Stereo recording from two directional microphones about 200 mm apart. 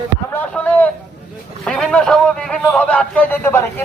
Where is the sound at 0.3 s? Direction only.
5° left (ahead or behind).